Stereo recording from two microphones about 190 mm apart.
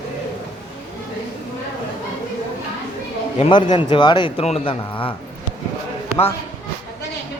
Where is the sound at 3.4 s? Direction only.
25° left (ahead or behind).